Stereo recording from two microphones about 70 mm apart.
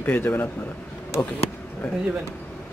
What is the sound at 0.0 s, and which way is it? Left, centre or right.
Speech, left.